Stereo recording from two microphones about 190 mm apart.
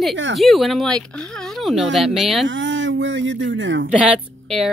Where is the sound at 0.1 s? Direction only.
70° right (ahead or behind).